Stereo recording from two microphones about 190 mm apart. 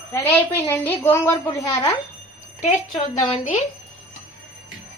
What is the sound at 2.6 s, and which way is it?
Speech, 40° left (ahead or behind).